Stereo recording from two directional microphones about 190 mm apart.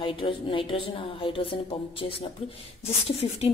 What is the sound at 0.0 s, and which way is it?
A woman's voice, 25° left (ahead or behind).